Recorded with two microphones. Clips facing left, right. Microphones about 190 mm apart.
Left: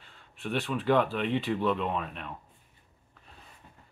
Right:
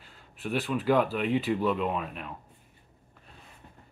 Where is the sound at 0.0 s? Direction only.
5° right (ahead or behind).